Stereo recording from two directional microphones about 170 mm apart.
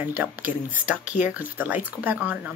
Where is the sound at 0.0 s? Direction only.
10° right (ahead or behind).